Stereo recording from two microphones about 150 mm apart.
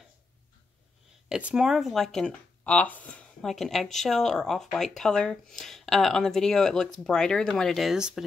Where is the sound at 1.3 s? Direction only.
5° right (ahead or behind).